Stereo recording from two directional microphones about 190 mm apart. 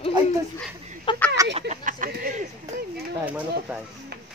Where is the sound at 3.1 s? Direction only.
10° right (ahead or behind).